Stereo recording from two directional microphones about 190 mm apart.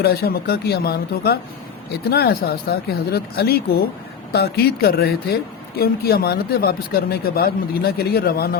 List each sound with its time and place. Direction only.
0.0 s speech: 55° left (ahead or behind)